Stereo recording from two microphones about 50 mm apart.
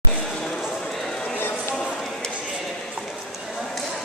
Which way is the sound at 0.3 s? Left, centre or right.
Centre.